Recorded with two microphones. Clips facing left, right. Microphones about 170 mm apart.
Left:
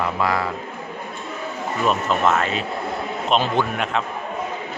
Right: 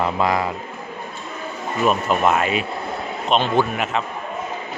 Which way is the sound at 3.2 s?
Centre (ahead or behind).